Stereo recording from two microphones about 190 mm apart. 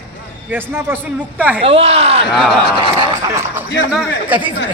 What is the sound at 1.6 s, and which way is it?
Speech, 30° right (ahead or behind).